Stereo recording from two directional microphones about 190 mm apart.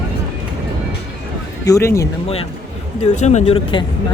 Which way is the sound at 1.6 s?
15° left (ahead or behind).